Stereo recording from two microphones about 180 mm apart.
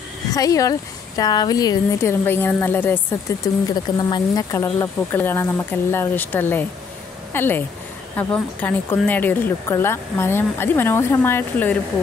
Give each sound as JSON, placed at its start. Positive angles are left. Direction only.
{"t": 0.3, "sound": "speech", "side_deg": 20}
{"t": 3.6, "sound": "speech", "side_deg": 20}